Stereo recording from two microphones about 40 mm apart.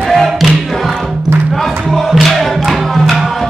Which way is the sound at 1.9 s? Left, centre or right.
Centre.